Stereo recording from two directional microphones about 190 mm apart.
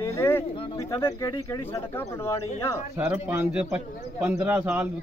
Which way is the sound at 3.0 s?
10° right (ahead or behind).